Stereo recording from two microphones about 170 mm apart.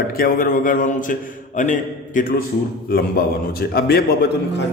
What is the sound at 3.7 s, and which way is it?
Speech, 65° left (ahead or behind).